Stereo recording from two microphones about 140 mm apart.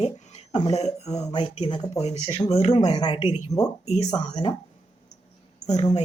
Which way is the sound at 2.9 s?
30° left (ahead or behind).